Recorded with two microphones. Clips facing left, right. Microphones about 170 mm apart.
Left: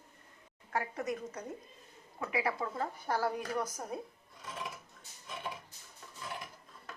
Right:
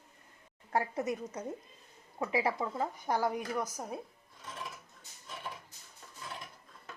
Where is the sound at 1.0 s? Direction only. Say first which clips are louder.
Right 2 dB; 20° right (ahead or behind).